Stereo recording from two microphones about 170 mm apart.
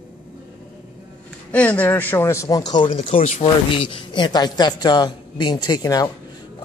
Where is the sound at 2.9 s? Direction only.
40° left (ahead or behind).